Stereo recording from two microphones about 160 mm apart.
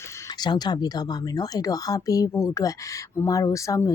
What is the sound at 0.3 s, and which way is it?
Speech, 25° left (ahead or behind).